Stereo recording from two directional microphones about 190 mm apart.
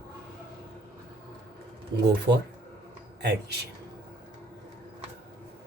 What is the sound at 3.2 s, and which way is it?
Speech, 60° right (ahead or behind).